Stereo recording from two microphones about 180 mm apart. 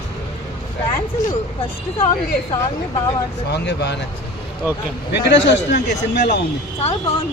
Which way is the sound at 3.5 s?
70° left (ahead or behind).